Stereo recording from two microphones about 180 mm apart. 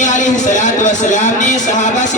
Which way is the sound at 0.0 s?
45° left (ahead or behind).